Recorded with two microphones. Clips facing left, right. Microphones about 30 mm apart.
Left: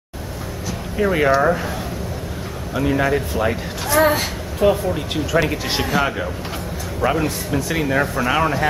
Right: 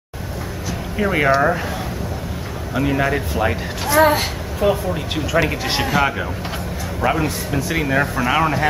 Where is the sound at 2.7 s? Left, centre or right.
Centre.